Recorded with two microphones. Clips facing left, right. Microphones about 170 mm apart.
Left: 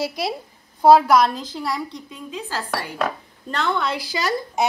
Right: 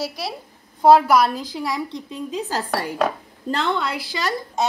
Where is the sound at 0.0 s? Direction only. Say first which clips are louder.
Left 3 dB; 15° left (ahead or behind).